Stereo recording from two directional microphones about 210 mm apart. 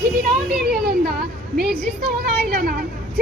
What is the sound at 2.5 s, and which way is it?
Speech, 45° right (ahead or behind).